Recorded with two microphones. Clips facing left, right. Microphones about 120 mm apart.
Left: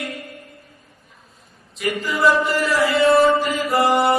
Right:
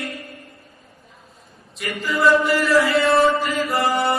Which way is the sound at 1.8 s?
Centre (ahead or behind).